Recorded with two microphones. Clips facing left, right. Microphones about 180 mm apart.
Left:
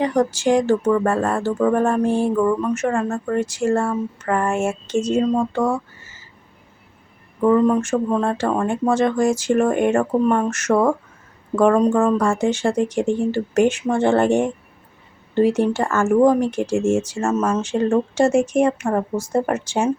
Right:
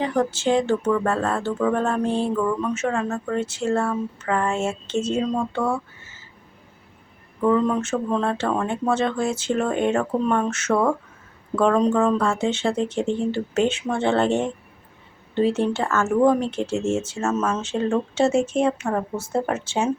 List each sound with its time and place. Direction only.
0.0 s music: 15° left (ahead or behind)
7.4 s music: 10° left (ahead or behind)